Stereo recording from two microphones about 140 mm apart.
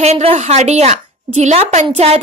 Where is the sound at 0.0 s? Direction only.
45° right (ahead or behind).